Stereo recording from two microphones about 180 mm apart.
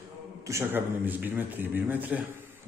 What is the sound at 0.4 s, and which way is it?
A man's voice, 15° right (ahead or behind).